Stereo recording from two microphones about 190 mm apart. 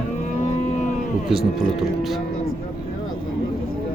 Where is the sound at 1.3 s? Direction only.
5° right (ahead or behind).